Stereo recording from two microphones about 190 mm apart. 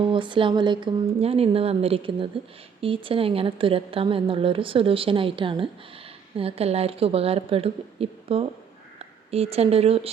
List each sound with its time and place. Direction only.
0.0 s a woman's voice: 25° right (ahead or behind)